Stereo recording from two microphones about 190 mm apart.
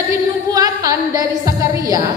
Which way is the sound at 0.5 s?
20° right (ahead or behind).